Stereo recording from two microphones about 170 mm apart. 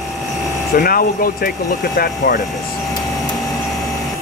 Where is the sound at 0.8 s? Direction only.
60° left (ahead or behind).